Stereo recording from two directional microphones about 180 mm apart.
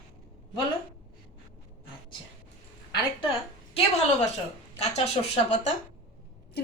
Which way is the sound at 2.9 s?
30° left (ahead or behind).